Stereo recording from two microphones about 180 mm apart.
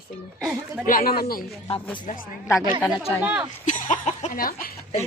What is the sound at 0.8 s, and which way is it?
Speech, 55° left (ahead or behind).